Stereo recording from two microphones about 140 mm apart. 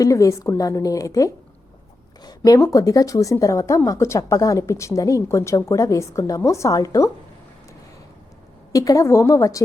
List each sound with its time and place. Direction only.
0.0 s a woman's voice: 25° left (ahead or behind)
8.7 s a woman's voice: 25° left (ahead or behind)